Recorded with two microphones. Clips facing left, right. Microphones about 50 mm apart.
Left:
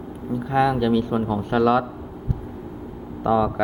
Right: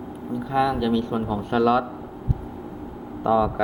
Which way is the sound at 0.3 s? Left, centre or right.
Centre.